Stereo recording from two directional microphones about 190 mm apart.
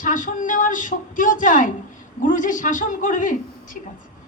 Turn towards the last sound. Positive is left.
turn(degrees=45)  # may be behind; listen again after turning